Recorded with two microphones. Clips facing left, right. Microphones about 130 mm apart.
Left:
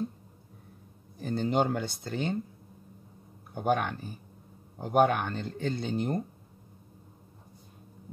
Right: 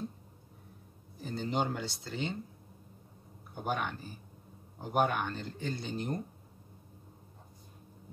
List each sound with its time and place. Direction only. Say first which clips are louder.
1.2 s speech: left 6 dB; 55° left (ahead or behind)
3.5 s speech: left 7 dB; 50° left (ahead or behind)